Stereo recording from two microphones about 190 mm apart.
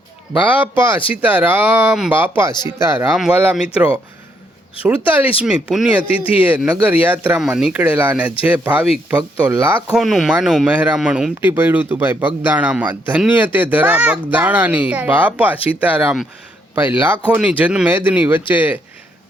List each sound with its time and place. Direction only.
0.4 s speech: 10° right (ahead or behind)